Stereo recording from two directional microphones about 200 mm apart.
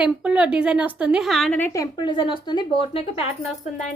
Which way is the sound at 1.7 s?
20° left (ahead or behind).